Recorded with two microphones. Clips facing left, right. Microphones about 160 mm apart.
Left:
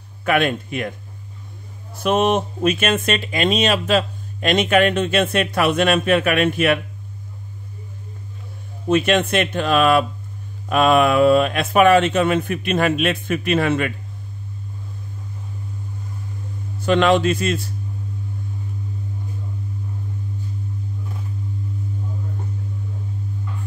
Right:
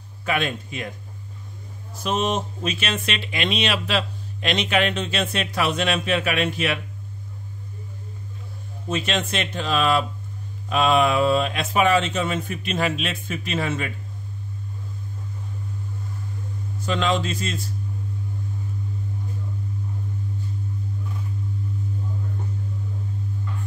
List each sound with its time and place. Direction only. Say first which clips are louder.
0.2 s speech: left 6 dB; 60° left (ahead or behind)
2.0 s speech: left 6 dB; 60° left (ahead or behind)
8.8 s speech: left 8 dB; 60° left (ahead or behind)
16.8 s speech: left 8 dB; 65° left (ahead or behind)